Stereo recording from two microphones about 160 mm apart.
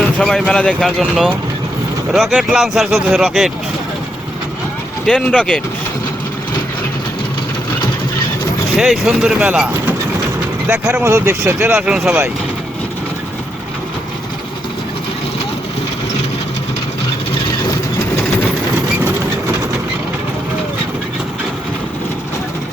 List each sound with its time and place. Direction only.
0.0 s speech: 5° left (ahead or behind)
5.0 s speech: 5° left (ahead or behind)
8.7 s speech: 5° right (ahead or behind)
11.8 s speech: 5° right (ahead or behind)